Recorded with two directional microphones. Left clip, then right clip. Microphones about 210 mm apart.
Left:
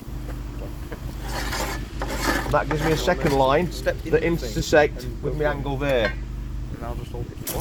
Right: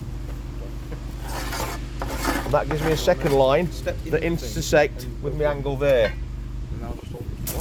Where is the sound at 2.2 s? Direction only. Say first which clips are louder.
Left 2 dB; centre (ahead or behind).